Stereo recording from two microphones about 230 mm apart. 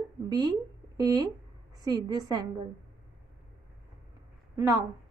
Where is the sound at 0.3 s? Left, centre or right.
Centre.